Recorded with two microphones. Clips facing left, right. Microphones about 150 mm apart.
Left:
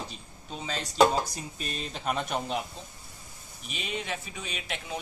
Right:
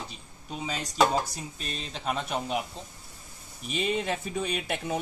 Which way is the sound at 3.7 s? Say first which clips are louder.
Right 6 dB; 40° right (ahead or behind).